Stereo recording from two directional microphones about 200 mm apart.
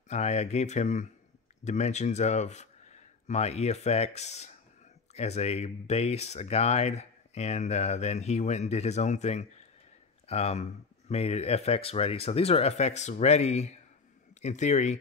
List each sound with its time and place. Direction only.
0.1 s speech: 35° left (ahead or behind)